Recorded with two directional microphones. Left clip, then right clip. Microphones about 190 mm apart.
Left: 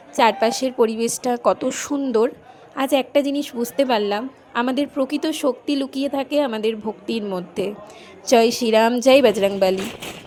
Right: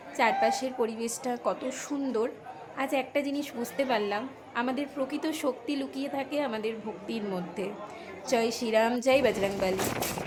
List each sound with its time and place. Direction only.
0.2 s a woman's voice: 50° left (ahead or behind)
2.0 s a woman's voice: 40° left (ahead or behind)